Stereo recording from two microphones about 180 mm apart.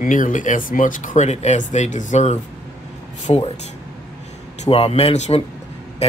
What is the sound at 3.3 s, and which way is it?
Speech, 30° left (ahead or behind).